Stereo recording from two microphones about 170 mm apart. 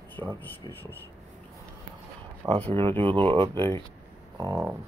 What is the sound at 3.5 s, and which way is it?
Speech, 15° left (ahead or behind).